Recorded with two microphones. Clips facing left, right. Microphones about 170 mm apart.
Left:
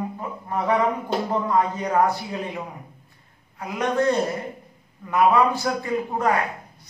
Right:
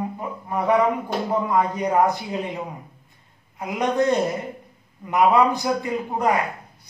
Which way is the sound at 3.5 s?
20° right (ahead or behind).